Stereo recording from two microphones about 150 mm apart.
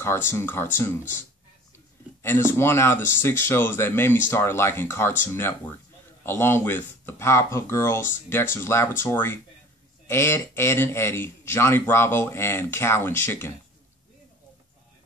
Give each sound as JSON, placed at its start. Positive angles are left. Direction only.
{"t": 0.0, "sound": "speech", "side_deg": 15}
{"t": 2.2, "sound": "speech", "side_deg": 15}